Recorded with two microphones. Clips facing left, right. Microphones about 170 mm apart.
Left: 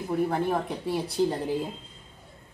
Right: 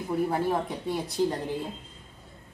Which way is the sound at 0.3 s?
Centre (ahead or behind).